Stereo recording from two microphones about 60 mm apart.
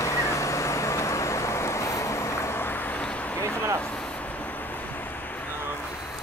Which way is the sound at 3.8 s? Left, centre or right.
Centre.